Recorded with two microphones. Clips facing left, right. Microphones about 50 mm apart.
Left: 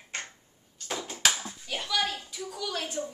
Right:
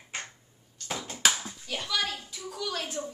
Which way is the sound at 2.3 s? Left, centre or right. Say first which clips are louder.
Even; centre.